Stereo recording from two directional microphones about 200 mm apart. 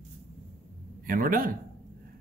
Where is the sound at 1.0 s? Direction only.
45° right (ahead or behind).